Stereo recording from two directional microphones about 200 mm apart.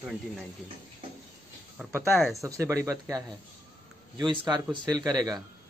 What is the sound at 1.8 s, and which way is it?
Speech, centre (ahead or behind).